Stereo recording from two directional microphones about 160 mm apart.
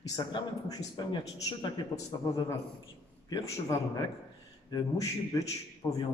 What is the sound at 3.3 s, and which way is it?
Speech, 20° left (ahead or behind).